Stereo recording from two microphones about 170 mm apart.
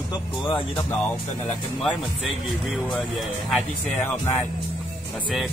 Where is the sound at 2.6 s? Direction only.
Centre (ahead or behind).